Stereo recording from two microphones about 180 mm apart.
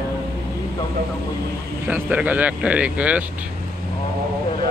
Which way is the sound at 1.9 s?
10° right (ahead or behind).